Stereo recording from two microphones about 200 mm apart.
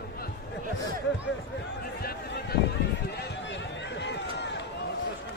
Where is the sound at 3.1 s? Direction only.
60° left (ahead or behind).